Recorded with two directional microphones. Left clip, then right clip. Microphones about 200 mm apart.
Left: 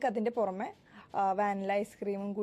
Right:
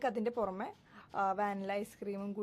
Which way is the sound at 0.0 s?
10° left (ahead or behind).